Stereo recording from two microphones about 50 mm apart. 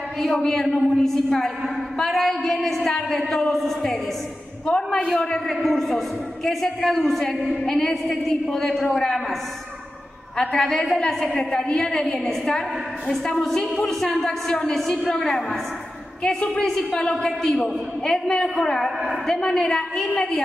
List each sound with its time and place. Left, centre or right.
0.2 s a man's voice: centre
5.1 s a man's voice: centre
10.3 s a woman's voice: centre
14.8 s a man's voice: centre